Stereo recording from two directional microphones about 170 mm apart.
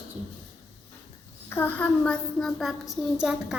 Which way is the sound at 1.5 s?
10° left (ahead or behind).